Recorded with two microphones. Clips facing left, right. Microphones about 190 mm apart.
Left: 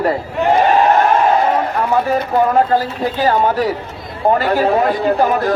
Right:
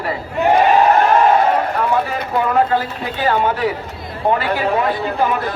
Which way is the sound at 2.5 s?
40° left (ahead or behind).